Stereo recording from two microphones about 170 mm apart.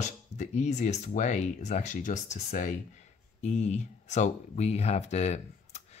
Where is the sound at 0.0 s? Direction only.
45° left (ahead or behind).